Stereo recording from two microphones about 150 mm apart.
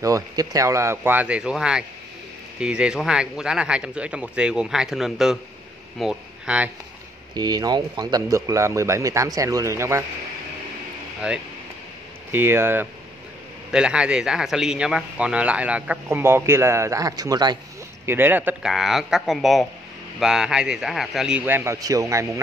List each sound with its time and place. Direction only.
0.0 s speech: 25° right (ahead or behind); by 6.7 s 5° right (ahead or behind)
7.3 s a man's voice: 25° right (ahead or behind)
11.1 s speech: 5° right (ahead or behind); by 17.6 s 25° right (ahead or behind)
18.0 s speech: 15° right (ahead or behind)